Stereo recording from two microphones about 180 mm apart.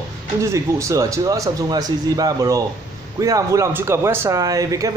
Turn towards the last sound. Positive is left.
turn(degrees=-20)  # may be behind; listen again after turning